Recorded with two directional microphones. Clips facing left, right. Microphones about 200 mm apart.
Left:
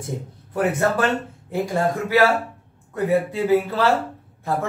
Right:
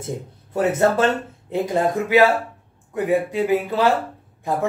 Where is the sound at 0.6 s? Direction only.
25° right (ahead or behind).